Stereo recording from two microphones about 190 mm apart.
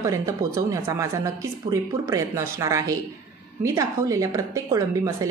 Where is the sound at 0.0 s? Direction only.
15° right (ahead or behind).